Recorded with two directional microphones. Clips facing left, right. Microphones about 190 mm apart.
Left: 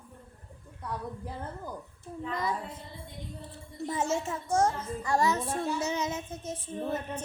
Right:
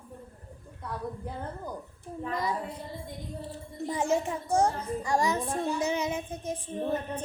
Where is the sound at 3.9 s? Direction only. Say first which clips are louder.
Right 3 dB; 15° right (ahead or behind).